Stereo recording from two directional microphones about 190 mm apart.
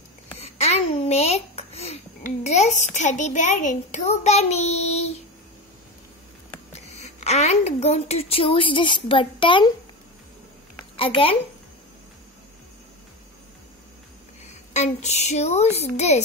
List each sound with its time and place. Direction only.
0.4 s a child's voice: 35° left (ahead or behind)
6.7 s a woman's voice: 35° left (ahead or behind)
11.0 s a child's voice: 30° left (ahead or behind)
14.7 s speech: 35° left (ahead or behind)